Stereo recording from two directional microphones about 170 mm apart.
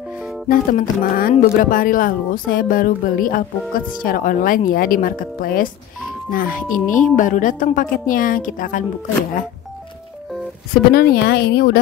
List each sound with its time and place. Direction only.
0.5 s a woman's voice: 55° left (ahead or behind)
10.9 s a woman's voice: 70° left (ahead or behind)